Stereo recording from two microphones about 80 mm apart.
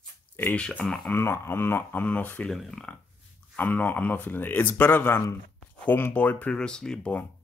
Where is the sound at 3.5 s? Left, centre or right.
Left; by 7.1 s centre.